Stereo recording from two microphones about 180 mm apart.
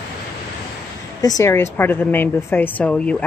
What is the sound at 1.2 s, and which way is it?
A woman's voice, 20° left (ahead or behind).